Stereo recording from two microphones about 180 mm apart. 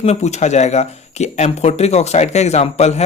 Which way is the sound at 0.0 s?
40° left (ahead or behind).